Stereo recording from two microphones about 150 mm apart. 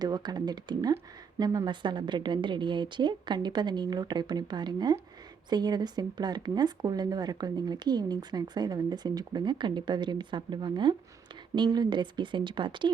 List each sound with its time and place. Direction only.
0.0 s speech: 25° right (ahead or behind)